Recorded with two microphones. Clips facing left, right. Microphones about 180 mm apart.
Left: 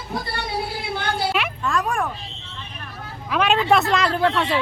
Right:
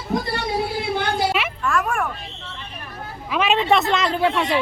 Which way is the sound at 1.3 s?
Centre (ahead or behind).